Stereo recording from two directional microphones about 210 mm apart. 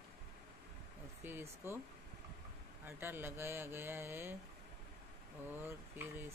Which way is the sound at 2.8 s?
10° right (ahead or behind).